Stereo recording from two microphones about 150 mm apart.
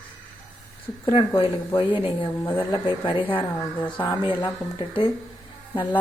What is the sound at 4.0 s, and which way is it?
Speech, 15° left (ahead or behind).